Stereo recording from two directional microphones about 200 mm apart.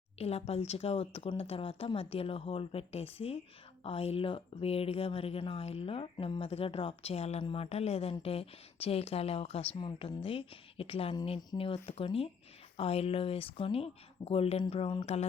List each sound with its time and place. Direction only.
0.2 s speech: 30° left (ahead or behind)